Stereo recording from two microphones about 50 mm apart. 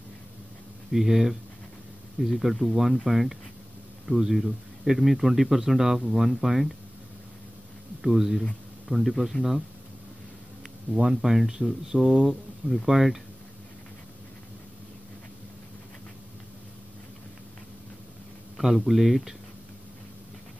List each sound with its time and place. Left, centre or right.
0.9 s speech: centre
8.0 s speech: centre
10.9 s speech: centre
18.6 s speech: centre